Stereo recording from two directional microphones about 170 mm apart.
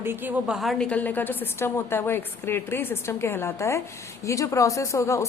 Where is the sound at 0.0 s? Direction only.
15° right (ahead or behind).